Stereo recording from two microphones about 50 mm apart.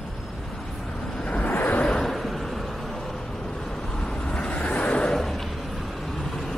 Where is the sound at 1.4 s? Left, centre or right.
Left.